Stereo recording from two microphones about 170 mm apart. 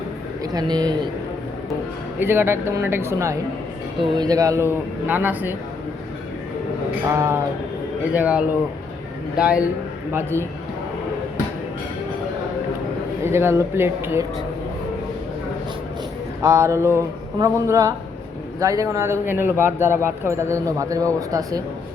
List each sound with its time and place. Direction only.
0.4 s a man's voice: 20° right (ahead or behind)
2.1 s speech: 15° right (ahead or behind)
7.1 s speech: 15° right (ahead or behind)
10.1 s speech: 15° right (ahead or behind)
13.2 s speech: 15° right (ahead or behind)
16.4 s a man's voice: 20° right (ahead or behind)